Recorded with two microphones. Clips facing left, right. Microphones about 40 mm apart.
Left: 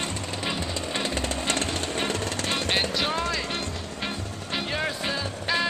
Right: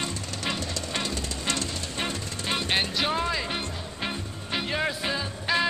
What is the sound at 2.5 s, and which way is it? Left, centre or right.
Vehicle, centre.